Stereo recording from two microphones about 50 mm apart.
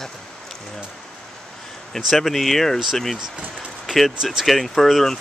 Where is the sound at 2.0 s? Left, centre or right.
Centre.